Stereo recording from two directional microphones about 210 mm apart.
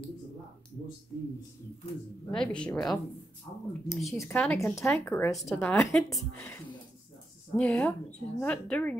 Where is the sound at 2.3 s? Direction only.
5° left (ahead or behind).